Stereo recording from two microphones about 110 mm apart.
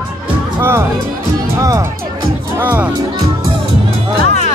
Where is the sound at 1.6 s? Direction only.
30° right (ahead or behind).